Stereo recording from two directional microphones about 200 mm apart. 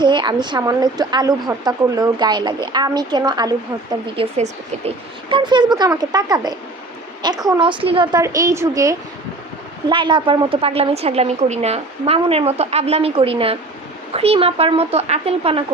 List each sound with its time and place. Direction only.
0.0 s a woman's voice: 20° right (ahead or behind)
4.0 s a woman's voice: 30° right (ahead or behind)